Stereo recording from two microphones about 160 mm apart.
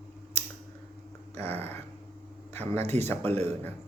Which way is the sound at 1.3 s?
40° right (ahead or behind).